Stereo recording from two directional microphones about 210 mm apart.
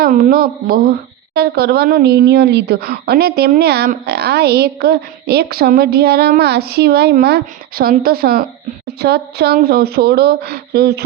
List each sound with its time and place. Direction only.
0.0 s a woman's voice: 45° right (ahead or behind)